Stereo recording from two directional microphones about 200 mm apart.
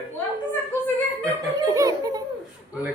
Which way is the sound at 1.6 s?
20° right (ahead or behind).